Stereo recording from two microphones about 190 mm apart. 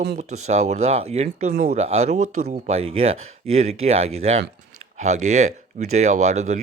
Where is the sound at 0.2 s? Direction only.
35° right (ahead or behind).